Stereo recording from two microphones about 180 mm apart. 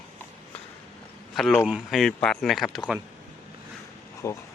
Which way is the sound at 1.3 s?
Centre (ahead or behind).